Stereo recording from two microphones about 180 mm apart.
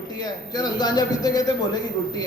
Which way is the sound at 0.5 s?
20° left (ahead or behind).